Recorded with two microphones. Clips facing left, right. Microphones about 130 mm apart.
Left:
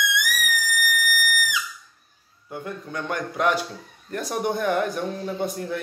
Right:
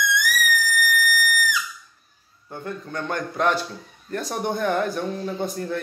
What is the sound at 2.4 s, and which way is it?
A man's voice, 10° left (ahead or behind).